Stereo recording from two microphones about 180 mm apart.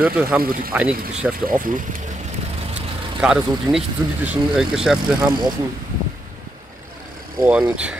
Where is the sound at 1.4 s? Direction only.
50° right (ahead or behind).